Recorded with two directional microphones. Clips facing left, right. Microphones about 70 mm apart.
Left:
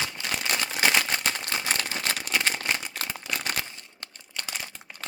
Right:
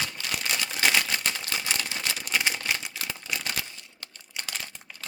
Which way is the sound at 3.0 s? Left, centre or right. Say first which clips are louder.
Left 2 dB; left.